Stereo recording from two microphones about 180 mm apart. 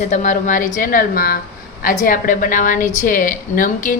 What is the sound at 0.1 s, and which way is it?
Speech, 45° left (ahead or behind).